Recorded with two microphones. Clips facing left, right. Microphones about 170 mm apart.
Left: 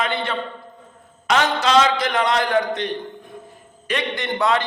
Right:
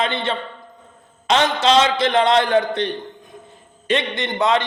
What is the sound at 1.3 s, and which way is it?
A man's voice, 25° right (ahead or behind).